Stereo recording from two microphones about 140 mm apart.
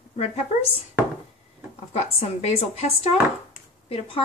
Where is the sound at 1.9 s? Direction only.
50° left (ahead or behind).